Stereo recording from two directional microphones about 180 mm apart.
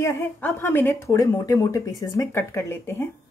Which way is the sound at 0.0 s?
15° left (ahead or behind).